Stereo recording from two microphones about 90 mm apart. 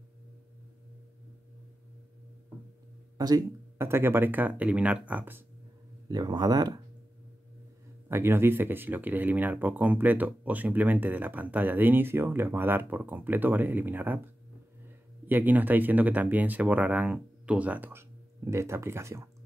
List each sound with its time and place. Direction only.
3.2 s speech: 45° right (ahead or behind)
3.7 s speech: 25° right (ahead or behind)
6.0 s speech: 50° right (ahead or behind)
8.1 s speech: 25° right (ahead or behind)
15.2 s speech: 20° right (ahead or behind)
18.5 s speech: 30° right (ahead or behind)